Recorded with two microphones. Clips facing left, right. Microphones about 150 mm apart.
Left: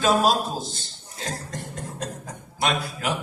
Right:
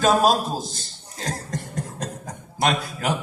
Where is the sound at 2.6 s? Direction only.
40° right (ahead or behind).